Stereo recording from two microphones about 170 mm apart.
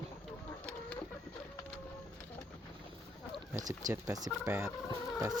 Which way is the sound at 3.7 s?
20° right (ahead or behind).